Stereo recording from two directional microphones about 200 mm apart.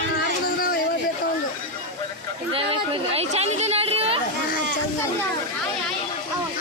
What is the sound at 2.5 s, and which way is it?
Speech, 30° right (ahead or behind).